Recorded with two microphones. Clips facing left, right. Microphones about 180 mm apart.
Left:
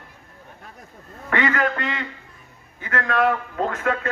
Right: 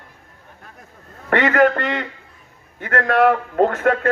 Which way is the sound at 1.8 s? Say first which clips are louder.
Right 5 dB; 55° right (ahead or behind).